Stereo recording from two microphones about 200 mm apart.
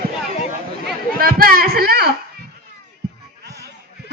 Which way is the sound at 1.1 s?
45° right (ahead or behind).